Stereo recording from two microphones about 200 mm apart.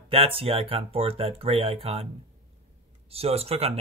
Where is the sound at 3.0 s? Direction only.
30° right (ahead or behind).